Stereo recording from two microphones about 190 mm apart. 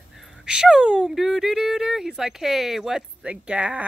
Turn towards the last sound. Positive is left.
turn(degrees=-5)  # may be behind; listen again after turning